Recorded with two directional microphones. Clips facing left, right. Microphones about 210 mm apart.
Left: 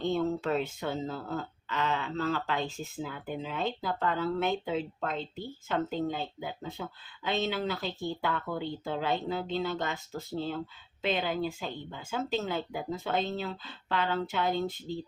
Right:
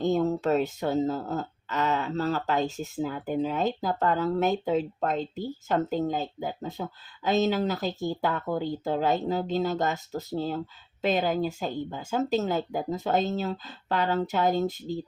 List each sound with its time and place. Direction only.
0.0 s speech: 40° right (ahead or behind)